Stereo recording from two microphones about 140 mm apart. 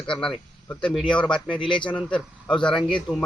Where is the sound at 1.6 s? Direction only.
35° left (ahead or behind).